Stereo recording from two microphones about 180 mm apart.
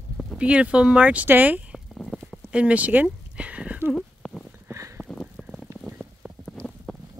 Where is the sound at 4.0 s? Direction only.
5° left (ahead or behind).